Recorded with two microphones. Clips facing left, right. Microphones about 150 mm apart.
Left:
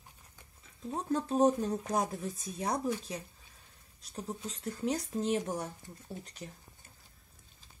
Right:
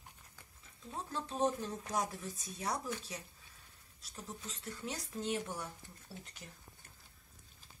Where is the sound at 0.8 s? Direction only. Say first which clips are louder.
Left 9 dB; 35° left (ahead or behind).